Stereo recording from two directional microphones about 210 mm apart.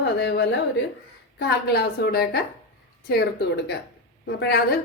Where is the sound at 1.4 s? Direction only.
50° left (ahead or behind).